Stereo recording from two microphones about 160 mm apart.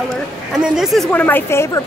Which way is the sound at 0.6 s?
5° right (ahead or behind).